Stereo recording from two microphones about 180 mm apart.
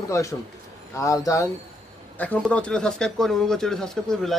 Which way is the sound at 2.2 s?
10° left (ahead or behind).